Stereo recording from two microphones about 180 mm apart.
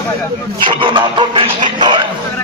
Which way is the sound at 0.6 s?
25° right (ahead or behind).